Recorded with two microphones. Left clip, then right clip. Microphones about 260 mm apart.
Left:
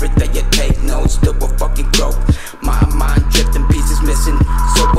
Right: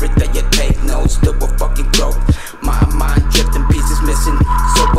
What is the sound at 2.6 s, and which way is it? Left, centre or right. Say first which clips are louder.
Music: even; right.